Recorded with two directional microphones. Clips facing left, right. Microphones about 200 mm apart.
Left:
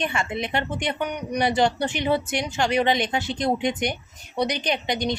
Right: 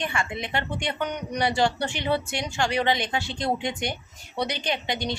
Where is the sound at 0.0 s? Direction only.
20° left (ahead or behind).